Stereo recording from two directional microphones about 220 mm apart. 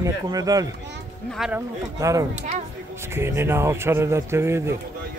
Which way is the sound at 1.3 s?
5° right (ahead or behind).